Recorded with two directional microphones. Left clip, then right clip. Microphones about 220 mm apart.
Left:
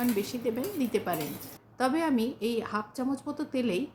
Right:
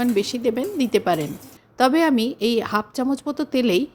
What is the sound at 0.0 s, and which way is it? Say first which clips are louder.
A woman's voice: right 9 dB; 40° right (ahead or behind).